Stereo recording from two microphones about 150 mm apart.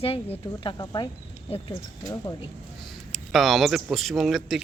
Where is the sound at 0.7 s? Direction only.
30° left (ahead or behind).